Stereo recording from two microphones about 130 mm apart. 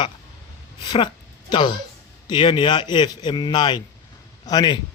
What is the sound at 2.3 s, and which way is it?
Speech, 40° left (ahead or behind).